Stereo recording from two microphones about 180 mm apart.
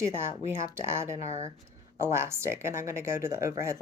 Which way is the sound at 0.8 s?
15° right (ahead or behind).